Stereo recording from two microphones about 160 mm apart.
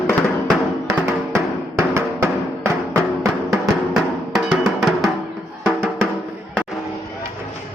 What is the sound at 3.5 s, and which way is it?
Music, centre (ahead or behind).